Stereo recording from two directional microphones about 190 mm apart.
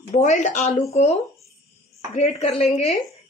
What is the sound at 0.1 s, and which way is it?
A woman's voice, 35° left (ahead or behind).